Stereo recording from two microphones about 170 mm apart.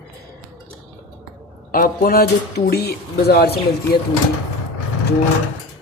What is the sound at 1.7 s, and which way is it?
Speech, 55° left (ahead or behind).